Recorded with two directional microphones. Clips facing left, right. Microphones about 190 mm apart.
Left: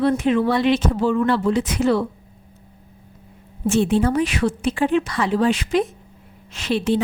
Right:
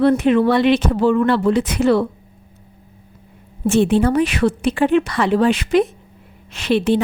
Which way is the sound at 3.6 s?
65° right (ahead or behind).